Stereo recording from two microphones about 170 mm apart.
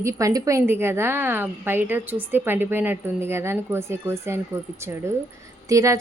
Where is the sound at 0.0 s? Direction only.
20° right (ahead or behind).